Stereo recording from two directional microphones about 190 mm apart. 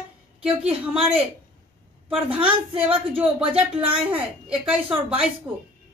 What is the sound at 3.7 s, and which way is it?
Speech, 5° right (ahead or behind).